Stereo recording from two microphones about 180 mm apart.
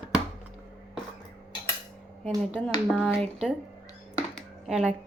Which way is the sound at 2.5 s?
5° left (ahead or behind).